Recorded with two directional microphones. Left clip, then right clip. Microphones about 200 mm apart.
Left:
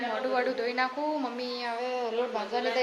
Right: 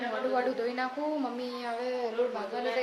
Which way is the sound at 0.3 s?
15° right (ahead or behind).